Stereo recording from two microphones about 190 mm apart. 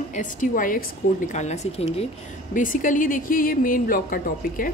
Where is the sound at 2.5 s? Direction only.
45° left (ahead or behind).